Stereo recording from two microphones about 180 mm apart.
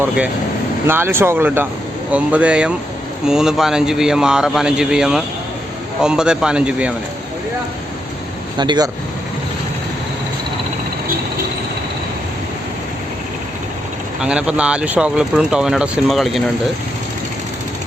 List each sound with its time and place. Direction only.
0.9 s speech: 10° right (ahead or behind)
8.5 s speech: 25° right (ahead or behind)
14.2 s speech: 5° right (ahead or behind)